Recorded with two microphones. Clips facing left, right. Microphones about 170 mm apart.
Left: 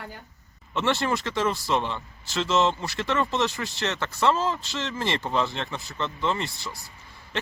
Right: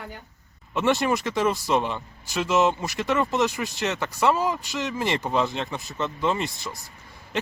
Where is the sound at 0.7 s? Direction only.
15° right (ahead or behind).